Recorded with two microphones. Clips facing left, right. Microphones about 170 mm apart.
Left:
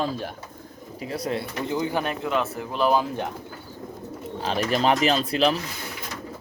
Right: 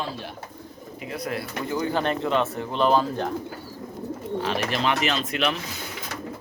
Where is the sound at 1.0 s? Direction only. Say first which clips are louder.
Left 2 dB; 35° left (ahead or behind); by 3.3 s 15° left (ahead or behind).